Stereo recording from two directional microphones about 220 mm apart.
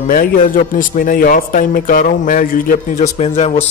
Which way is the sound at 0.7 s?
40° left (ahead or behind).